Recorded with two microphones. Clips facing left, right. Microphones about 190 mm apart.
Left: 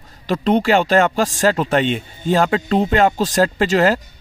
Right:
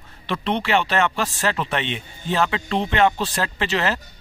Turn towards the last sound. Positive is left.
turn(degrees=40)  # may be behind; listen again after turning